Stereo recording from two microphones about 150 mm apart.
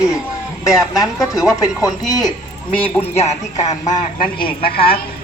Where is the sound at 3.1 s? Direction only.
50° left (ahead or behind).